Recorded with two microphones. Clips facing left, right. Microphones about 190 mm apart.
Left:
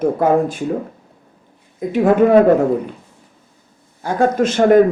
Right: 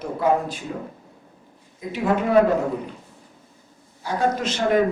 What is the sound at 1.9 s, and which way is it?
Speech, 50° left (ahead or behind).